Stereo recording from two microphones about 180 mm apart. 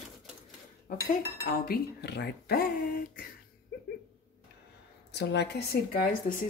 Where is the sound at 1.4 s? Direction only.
55° left (ahead or behind).